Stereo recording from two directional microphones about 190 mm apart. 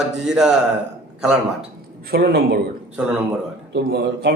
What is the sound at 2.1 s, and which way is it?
Speech, 55° right (ahead or behind).